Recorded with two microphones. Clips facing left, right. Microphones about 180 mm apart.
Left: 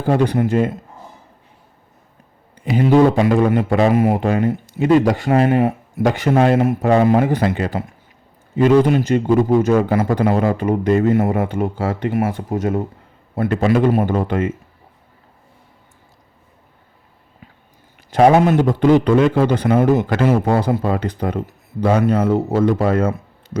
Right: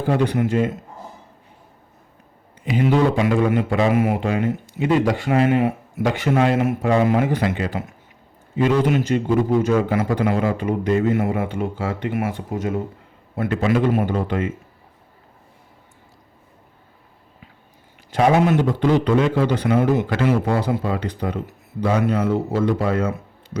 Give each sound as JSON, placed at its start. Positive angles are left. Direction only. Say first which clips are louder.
{"t": 0.1, "sound": "speech", "louder": "left 4 dB", "side_deg": 40}
{"t": 2.6, "sound": "a man's voice", "louder": "left 5 dB", "side_deg": 40}
{"t": 18.1, "sound": "a man's voice", "louder": "left 4 dB", "side_deg": 45}